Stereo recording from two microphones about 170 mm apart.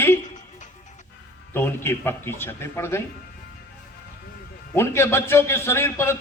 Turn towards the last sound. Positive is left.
turn(degrees=15)  # may be behind; listen again after turning